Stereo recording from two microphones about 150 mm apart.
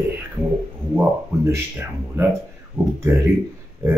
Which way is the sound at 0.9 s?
15° right (ahead or behind).